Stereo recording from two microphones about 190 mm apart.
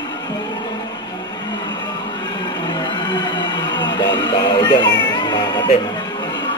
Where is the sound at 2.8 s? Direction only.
25° left (ahead or behind).